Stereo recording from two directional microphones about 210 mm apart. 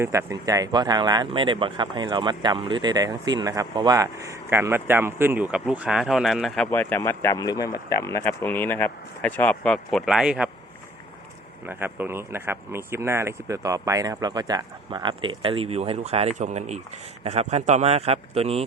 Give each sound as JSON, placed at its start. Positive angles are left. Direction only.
{"t": 0.0, "sound": "speech", "side_deg": -15}
{"t": 11.6, "sound": "speech", "side_deg": -10}